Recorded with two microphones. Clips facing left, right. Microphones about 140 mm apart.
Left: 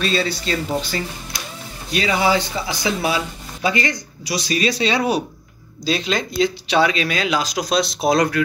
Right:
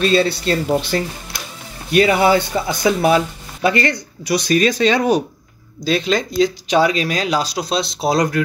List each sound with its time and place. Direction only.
0.0 s speech: 45° right (ahead or behind); by 8.2 s 30° right (ahead or behind)